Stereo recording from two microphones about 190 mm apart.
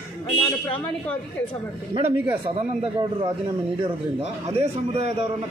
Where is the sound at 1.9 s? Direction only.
30° right (ahead or behind).